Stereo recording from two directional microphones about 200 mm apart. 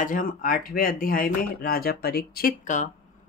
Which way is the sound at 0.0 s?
45° left (ahead or behind).